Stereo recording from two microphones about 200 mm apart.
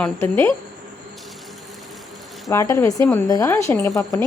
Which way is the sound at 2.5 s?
15° left (ahead or behind).